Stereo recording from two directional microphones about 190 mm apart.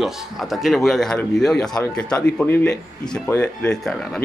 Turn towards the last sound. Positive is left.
turn(degrees=5)  # may be behind; listen again after turning